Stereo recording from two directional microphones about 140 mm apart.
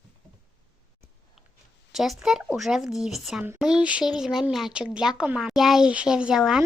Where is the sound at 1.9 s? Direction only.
Centre (ahead or behind).